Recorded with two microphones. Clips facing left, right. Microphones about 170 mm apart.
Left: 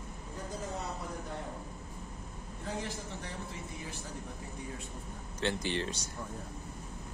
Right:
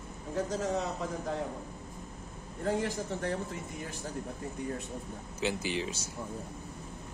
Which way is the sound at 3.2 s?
45° right (ahead or behind).